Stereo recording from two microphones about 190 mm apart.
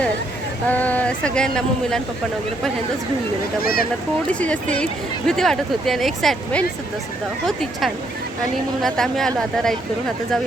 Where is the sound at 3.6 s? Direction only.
50° left (ahead or behind).